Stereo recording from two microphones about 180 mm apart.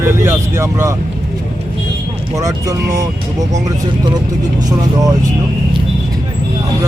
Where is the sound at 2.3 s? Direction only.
20° right (ahead or behind).